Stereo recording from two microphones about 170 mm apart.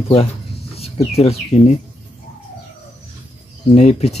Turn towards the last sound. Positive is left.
turn(degrees=40)  # may be behind; listen again after turning